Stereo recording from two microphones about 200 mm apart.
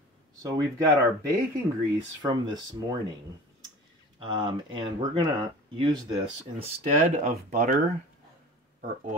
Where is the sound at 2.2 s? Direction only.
20° right (ahead or behind).